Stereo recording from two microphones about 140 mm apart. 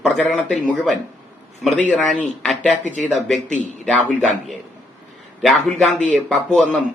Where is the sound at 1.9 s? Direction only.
5° left (ahead or behind).